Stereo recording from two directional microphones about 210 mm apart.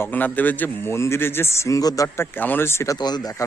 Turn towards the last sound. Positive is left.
turn(degrees=15)  # may be behind; listen again after turning